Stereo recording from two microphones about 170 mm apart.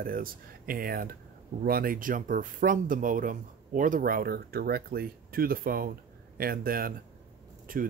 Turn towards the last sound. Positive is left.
turn(degrees=-55)  # may be behind; listen again after turning